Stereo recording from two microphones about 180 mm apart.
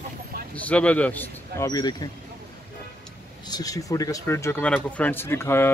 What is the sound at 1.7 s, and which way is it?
Speech, 20° left (ahead or behind).